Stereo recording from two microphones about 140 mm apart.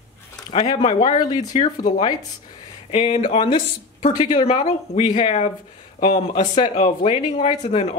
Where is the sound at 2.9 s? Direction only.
45° left (ahead or behind).